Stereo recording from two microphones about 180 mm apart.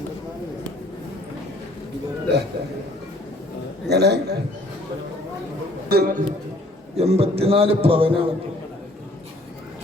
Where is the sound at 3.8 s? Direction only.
65° right (ahead or behind).